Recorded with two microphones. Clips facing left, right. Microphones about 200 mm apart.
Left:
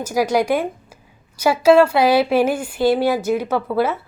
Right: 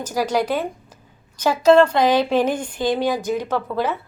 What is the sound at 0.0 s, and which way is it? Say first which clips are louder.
A woman's voice: left 3 dB; 10° left (ahead or behind).